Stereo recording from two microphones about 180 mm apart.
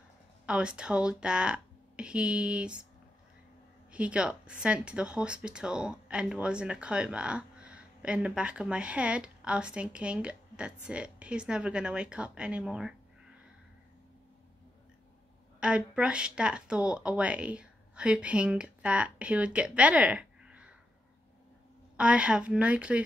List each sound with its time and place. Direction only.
0.5 s speech: 5° right (ahead or behind)
3.9 s speech: 5° right (ahead or behind)
15.6 s speech: 5° right (ahead or behind)
21.9 s speech: 5° right (ahead or behind)